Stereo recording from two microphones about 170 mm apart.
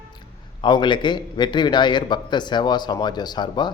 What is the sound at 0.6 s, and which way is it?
A man's voice, 25° left (ahead or behind).